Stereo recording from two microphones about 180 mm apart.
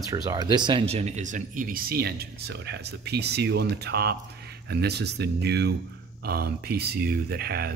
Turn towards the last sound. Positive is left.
turn(degrees=-60)  # may be behind; listen again after turning